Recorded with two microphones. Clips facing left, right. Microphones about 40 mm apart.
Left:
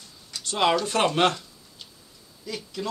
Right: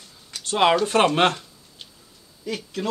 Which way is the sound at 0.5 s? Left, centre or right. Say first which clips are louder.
Right 4 dB; right.